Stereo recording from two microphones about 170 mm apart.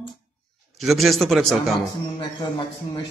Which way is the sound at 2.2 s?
25° left (ahead or behind).